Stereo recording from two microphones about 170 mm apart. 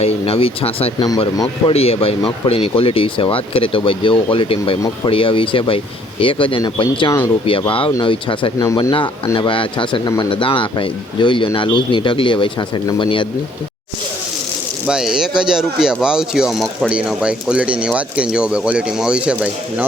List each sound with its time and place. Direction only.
0.0 s speech: 35° left (ahead or behind)
8.8 s speech: 30° left (ahead or behind)
14.8 s speech: 5° right (ahead or behind)